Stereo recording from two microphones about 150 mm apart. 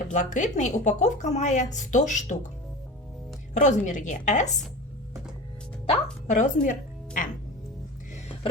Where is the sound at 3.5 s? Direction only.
55° left (ahead or behind).